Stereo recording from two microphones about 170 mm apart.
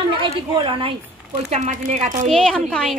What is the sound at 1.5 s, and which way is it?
Speech, 45° right (ahead or behind).